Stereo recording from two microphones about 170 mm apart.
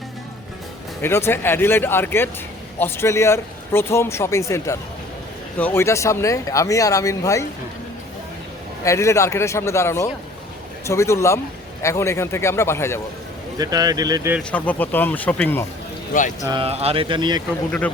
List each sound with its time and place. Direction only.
1.0 s speech: 15° left (ahead or behind)
8.8 s speech: 15° left (ahead or behind)
13.6 s speech: 20° right (ahead or behind)
14.5 s speech: 10° left (ahead or behind)
16.4 s speech: 25° right (ahead or behind)
16.6 s speech: 35° right (ahead or behind)
17.7 s speech: 5° left (ahead or behind)